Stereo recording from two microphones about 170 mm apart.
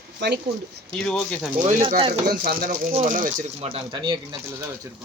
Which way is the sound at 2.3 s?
60° right (ahead or behind).